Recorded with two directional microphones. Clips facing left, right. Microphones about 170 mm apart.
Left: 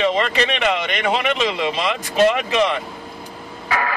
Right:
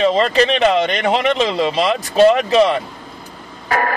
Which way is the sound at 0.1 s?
35° right (ahead or behind).